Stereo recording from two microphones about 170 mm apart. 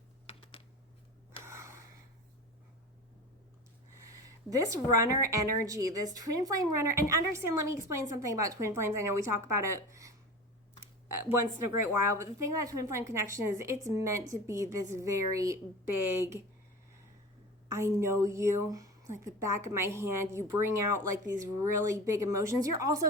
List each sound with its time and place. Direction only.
0.3 s typing: 35° left (ahead or behind)
1.5 s gasp: 15° right (ahead or behind)
4.1 s a sound: 20° right (ahead or behind)
5.2 s a woman's voice: 20° right (ahead or behind)
11.3 s a woman's voice: 15° right (ahead or behind)
17.7 s a woman's voice: 15° right (ahead or behind)